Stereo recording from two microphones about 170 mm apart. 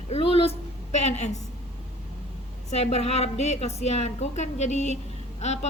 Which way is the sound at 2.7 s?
40° left (ahead or behind).